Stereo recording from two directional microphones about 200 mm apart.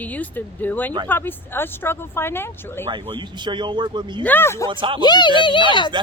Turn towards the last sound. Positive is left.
turn(degrees=25)  # may be behind; listen again after turning